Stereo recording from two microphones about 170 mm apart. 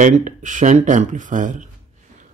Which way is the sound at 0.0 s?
45° right (ahead or behind).